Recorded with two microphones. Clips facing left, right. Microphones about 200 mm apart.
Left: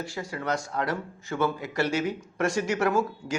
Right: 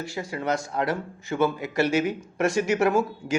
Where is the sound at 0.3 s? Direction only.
20° right (ahead or behind).